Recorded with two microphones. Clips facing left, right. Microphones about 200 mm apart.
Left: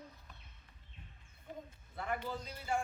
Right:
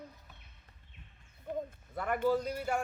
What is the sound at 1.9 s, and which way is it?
Speech, 60° right (ahead or behind).